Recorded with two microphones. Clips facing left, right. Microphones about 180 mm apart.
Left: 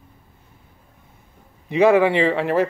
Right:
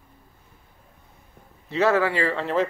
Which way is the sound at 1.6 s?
15° left (ahead or behind).